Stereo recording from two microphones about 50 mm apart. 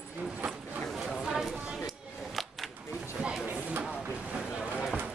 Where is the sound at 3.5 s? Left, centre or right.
Right.